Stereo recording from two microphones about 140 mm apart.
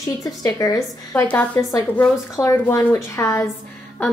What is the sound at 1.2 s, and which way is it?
A woman's voice, 10° left (ahead or behind).